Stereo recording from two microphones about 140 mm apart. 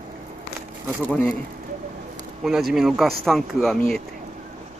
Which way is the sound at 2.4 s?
Centre (ahead or behind).